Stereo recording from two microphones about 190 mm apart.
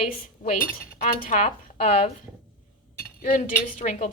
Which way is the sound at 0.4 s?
45° left (ahead or behind).